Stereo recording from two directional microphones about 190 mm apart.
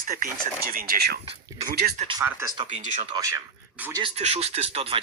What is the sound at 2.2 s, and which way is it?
Speech, 15° right (ahead or behind).